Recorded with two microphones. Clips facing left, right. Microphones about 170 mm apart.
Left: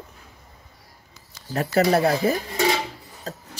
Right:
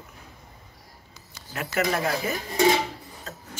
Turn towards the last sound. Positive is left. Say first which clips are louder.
# left 6 dB
turn(degrees=35)  # may be behind; listen again after turning